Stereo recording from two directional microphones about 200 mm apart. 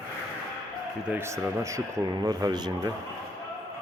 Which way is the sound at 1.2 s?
15° right (ahead or behind).